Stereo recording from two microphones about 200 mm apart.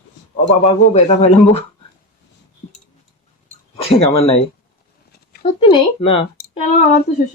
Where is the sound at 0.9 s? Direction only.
35° left (ahead or behind).